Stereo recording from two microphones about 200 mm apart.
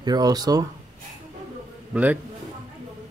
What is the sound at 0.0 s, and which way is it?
Speech, 20° right (ahead or behind).